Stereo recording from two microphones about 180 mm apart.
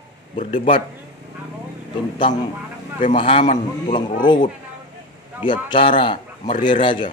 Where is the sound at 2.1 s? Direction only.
25° left (ahead or behind).